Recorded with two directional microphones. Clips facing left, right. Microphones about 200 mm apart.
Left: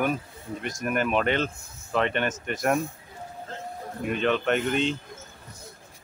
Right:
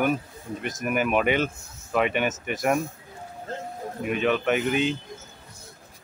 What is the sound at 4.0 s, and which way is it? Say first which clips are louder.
Speech: right 1 dB; 5° right (ahead or behind).